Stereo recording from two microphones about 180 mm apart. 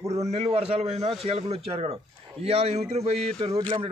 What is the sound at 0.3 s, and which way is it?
A man's voice, 35° right (ahead or behind).